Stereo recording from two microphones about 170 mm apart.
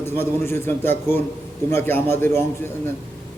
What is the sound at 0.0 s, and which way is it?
A man's voice, 15° left (ahead or behind).